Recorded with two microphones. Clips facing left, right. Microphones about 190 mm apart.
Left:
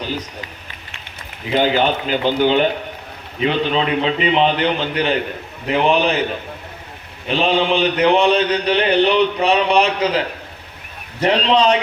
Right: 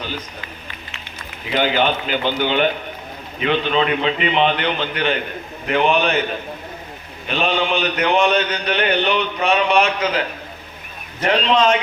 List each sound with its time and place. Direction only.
1.5 s speech: 35° left (ahead or behind)
7.3 s speech: 30° left (ahead or behind)